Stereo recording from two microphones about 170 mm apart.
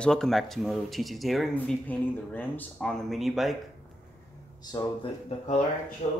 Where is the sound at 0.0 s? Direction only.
5° left (ahead or behind).